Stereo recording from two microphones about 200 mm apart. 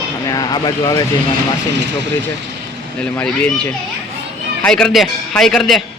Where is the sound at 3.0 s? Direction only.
5° left (ahead or behind).